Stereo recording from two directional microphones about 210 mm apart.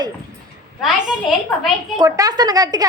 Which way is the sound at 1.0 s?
Centre (ahead or behind).